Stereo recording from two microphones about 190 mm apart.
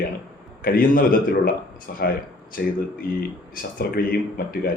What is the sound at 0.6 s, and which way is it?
Speech, 50° left (ahead or behind).